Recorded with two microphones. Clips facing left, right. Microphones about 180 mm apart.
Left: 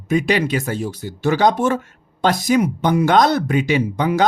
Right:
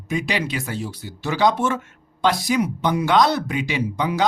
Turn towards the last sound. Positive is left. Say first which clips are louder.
# left 5 dB
turn(degrees=50)  # may be behind; listen again after turning